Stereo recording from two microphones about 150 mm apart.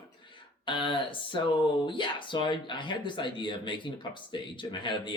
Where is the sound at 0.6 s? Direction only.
35° left (ahead or behind).